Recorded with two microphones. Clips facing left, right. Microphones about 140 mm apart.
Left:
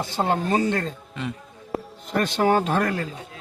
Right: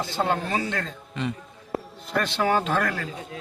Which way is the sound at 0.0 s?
45° left (ahead or behind).